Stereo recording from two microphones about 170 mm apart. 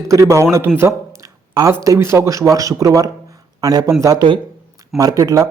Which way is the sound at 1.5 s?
20° right (ahead or behind).